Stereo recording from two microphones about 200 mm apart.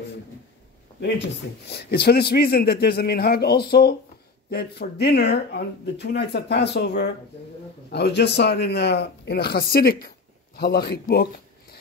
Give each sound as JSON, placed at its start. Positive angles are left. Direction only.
{"t": 1.7, "sound": "a man's voice", "side_deg": 55}